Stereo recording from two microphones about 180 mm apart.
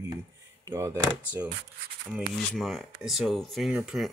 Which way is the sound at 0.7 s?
15° right (ahead or behind).